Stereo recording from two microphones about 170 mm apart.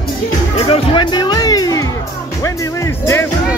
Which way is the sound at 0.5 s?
35° left (ahead or behind).